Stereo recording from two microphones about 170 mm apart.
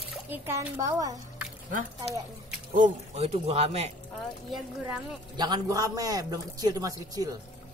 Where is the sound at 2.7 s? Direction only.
45° right (ahead or behind).